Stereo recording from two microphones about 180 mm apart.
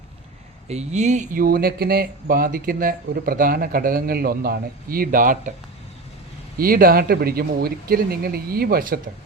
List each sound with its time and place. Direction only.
0.7 s speech: 40° right (ahead or behind)
6.6 s speech: 55° right (ahead or behind)